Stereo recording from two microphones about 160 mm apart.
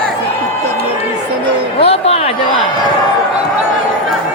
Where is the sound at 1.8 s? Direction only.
40° left (ahead or behind).